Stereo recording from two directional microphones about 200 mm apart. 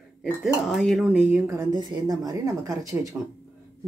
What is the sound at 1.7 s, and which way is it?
Speech, 20° right (ahead or behind).